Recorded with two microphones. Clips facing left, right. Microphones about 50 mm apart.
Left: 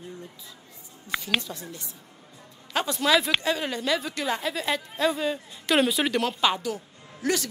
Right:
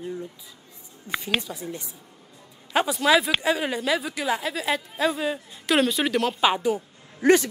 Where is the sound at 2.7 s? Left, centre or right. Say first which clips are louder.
Right 4 dB; centre.